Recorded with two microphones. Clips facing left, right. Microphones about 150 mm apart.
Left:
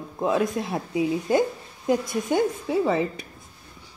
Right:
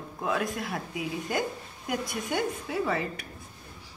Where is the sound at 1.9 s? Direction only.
20° left (ahead or behind).